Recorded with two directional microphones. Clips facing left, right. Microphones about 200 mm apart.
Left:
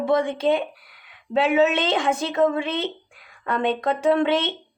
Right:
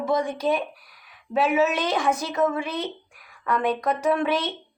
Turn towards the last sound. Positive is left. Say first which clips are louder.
# left 3 dB
turn(degrees=25)  # may be behind; listen again after turning